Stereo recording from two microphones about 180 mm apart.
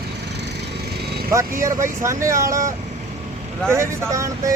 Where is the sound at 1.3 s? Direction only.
15° right (ahead or behind).